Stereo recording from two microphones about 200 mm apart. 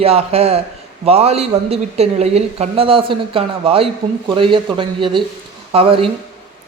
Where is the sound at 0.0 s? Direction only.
30° right (ahead or behind).